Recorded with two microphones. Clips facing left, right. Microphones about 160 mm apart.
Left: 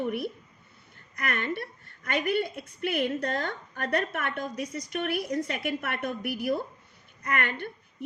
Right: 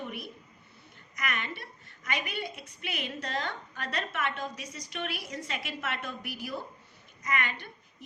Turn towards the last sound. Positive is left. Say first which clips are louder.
# left 3 dB
turn(degrees=55)  # may be behind; listen again after turning